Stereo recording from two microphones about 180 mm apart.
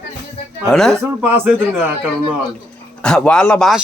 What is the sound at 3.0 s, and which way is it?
Speech, 5° left (ahead or behind).